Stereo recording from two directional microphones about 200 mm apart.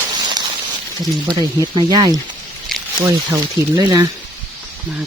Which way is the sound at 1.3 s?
20° right (ahead or behind).